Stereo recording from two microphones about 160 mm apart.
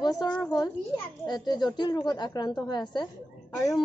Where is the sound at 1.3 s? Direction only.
25° left (ahead or behind).